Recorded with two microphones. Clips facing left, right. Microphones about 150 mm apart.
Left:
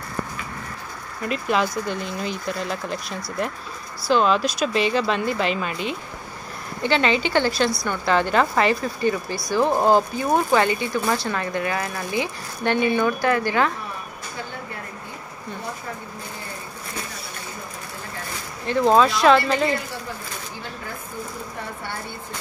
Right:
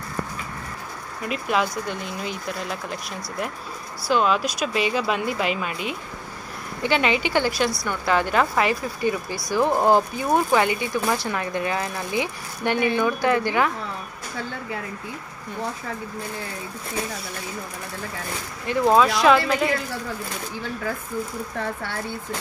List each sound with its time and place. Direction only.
1.2 s speech: 5° right (ahead or behind)
18.7 s speech: 5° right (ahead or behind)